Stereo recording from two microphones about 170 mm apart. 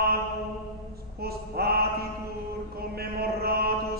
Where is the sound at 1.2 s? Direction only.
65° right (ahead or behind).